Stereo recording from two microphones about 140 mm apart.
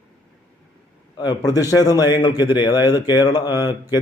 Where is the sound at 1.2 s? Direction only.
30° left (ahead or behind).